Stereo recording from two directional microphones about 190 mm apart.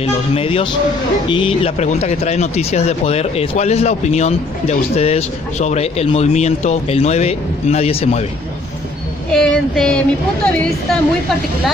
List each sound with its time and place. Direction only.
0.0 s speech: 30° left (ahead or behind)
9.3 s a woman's voice: 5° left (ahead or behind)